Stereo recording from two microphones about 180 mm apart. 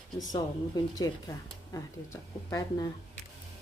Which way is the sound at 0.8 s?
20° left (ahead or behind).